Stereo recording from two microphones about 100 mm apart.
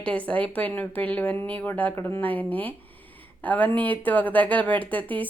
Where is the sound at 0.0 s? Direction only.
10° left (ahead or behind).